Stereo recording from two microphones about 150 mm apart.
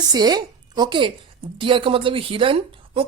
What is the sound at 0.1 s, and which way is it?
A woman's voice, 25° right (ahead or behind).